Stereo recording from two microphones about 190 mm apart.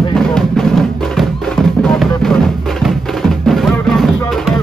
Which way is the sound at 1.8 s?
Centre (ahead or behind).